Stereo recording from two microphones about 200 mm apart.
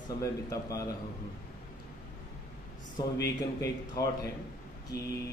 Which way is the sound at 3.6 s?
15° left (ahead or behind).